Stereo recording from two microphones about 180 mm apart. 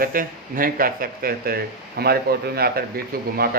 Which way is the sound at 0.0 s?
50° right (ahead or behind).